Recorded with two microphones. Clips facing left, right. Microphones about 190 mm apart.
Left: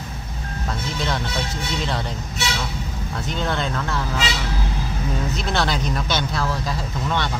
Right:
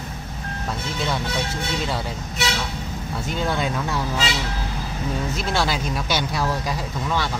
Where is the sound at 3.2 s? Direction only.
10° right (ahead or behind).